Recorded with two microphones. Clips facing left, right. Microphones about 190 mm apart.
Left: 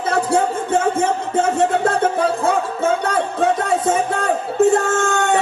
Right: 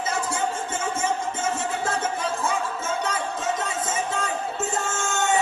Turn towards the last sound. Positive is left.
turn(degrees=60)  # may be behind; listen again after turning